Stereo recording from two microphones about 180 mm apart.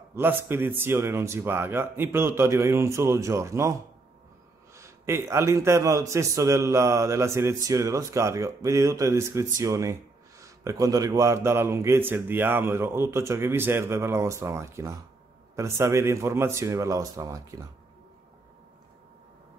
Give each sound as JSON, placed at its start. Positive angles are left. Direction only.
{"t": 0.1, "sound": "a man's voice", "side_deg": -10}
{"t": 4.7, "sound": "a man's voice", "side_deg": -15}